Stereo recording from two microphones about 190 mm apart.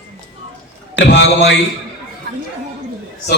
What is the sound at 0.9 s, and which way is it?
Speech, 70° left (ahead or behind).